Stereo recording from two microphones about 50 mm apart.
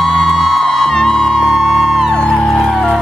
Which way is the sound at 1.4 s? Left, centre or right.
Centre.